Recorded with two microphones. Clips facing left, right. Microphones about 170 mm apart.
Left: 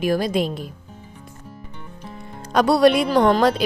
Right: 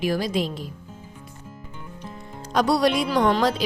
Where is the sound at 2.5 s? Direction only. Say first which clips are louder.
Left 5 dB; 60° left (ahead or behind).